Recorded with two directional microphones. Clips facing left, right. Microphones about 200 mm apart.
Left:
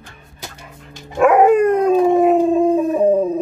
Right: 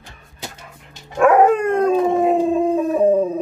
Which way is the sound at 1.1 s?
10° left (ahead or behind).